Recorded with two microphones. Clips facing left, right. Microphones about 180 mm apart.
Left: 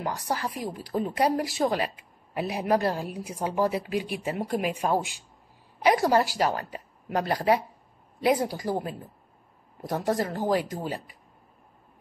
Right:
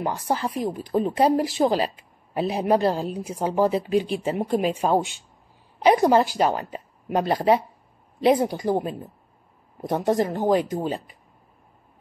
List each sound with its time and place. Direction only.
0.0 s a woman's voice: 25° right (ahead or behind)